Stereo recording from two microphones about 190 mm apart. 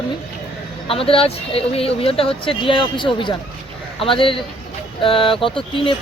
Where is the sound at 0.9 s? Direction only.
30° left (ahead or behind).